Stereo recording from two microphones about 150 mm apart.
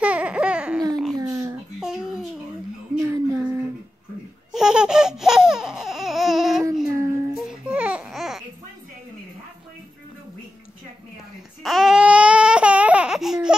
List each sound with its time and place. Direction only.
0.0 s babbling: 10° right (ahead or behind)
1.1 s a sound: 25° right (ahead or behind)
1.8 s babbling: 5° right (ahead or behind)
3.0 s a sound: 20° right (ahead or behind)
4.5 s laughter: 5° right (ahead or behind)
6.9 s child singing: 20° right (ahead or behind)
7.3 s babbling: 5° right (ahead or behind)
11.6 s babbling: centre (ahead or behind)